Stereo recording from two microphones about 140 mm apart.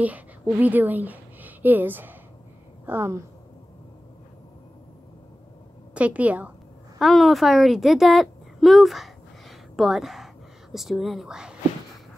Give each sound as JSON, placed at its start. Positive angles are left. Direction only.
{"t": 0.0, "sound": "a woman's voice", "side_deg": -10}
{"t": 5.9, "sound": "a woman's voice", "side_deg": -10}
{"t": 7.0, "sound": "a woman's voice", "side_deg": 0}